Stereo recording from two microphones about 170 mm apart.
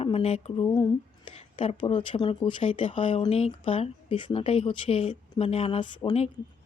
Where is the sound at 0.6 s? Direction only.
25° left (ahead or behind).